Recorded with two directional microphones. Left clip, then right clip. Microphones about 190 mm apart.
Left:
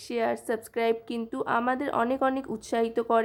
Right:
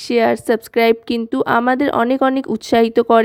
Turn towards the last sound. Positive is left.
turn(degrees=-40)  # may be behind; listen again after turning